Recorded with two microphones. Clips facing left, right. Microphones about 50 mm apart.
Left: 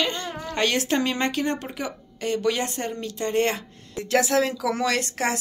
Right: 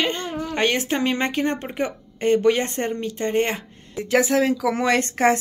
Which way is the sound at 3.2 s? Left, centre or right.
Right.